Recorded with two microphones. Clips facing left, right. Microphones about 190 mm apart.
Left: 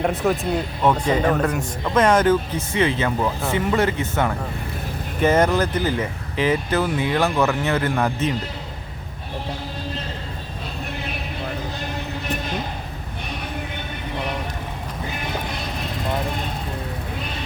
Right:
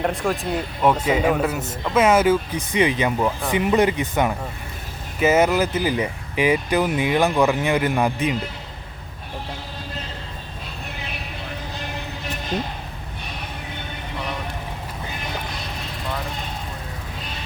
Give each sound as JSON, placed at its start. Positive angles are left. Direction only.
{"t": 0.0, "sound": "speech", "side_deg": 5}